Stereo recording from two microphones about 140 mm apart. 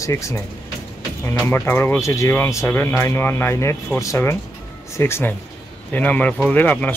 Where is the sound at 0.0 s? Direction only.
20° left (ahead or behind).